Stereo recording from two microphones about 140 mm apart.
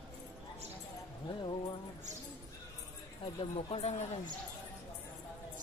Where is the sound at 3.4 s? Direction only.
45° left (ahead or behind).